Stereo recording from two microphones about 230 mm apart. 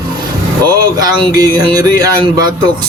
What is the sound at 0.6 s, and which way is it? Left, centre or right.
A man's voice, centre.